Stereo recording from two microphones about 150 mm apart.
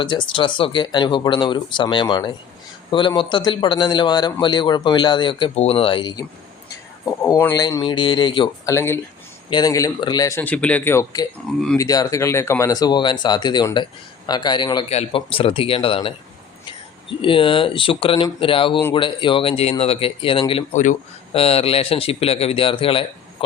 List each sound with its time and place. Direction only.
0.0 s speech: 30° left (ahead or behind)
7.3 s speech: 25° left (ahead or behind)
8.6 s speech: 20° left (ahead or behind)
10.4 s speech: 10° left (ahead or behind); by 14.8 s 30° left (ahead or behind)
14.8 s speech: 40° left (ahead or behind)